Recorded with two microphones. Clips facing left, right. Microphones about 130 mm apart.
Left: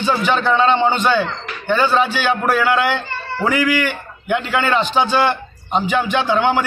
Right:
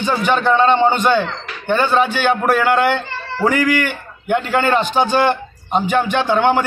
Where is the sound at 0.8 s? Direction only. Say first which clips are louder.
Right 2 dB; 10° right (ahead or behind).